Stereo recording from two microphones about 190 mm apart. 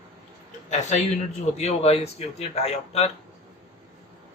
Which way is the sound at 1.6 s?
35° left (ahead or behind).